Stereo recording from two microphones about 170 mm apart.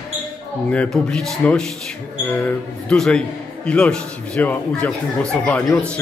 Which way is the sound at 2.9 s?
5° left (ahead or behind).